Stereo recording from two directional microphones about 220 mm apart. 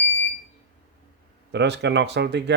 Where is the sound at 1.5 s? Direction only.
50° right (ahead or behind).